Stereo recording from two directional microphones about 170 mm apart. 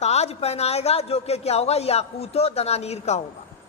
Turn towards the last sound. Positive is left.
turn(degrees=40)  # may be behind; listen again after turning